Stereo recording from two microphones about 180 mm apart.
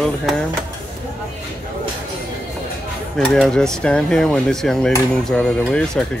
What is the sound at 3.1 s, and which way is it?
Speech, centre (ahead or behind).